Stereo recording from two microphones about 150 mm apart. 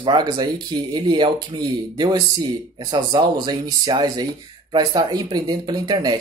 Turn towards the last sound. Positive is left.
turn(degrees=-30)  # may be behind; listen again after turning